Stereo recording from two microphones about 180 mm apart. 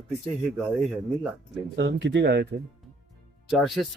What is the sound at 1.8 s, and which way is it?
Speech, 80° right.